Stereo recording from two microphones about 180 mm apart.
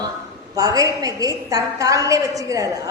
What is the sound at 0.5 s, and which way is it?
A woman's voice, 20° right (ahead or behind).